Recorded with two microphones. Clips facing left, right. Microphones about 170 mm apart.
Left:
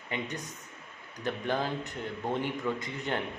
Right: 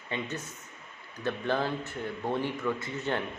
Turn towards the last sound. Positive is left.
turn(degrees=15)  # may be behind; listen again after turning